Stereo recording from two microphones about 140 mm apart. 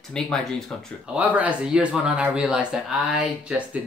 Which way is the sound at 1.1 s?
10° right (ahead or behind).